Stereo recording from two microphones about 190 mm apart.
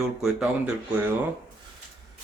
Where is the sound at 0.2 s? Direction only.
5° right (ahead or behind).